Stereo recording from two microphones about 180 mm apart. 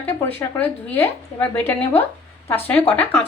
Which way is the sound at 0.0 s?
15° left (ahead or behind).